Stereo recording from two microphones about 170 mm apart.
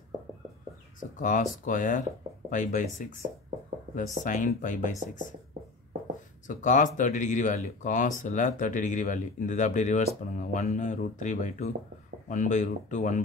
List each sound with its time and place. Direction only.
0.9 s speech: 50° left (ahead or behind)
6.4 s speech: 50° left (ahead or behind)